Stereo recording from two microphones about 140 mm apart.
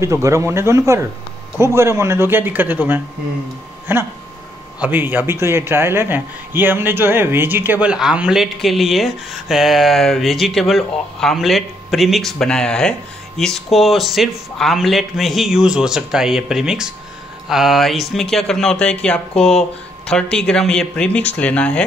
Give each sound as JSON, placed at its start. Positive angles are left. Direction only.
{"t": 0.0, "sound": "a man's voice", "side_deg": -20}